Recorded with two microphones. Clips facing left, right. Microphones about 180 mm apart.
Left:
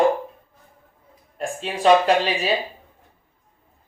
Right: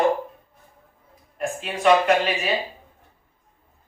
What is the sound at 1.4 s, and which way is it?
Speech, 30° left (ahead or behind).